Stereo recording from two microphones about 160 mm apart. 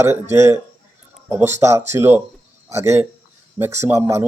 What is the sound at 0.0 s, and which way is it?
A man's voice, 15° right (ahead or behind).